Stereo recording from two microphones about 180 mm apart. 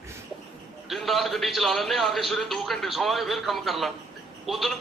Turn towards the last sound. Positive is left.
turn(degrees=0)  # may be behind; listen again after turning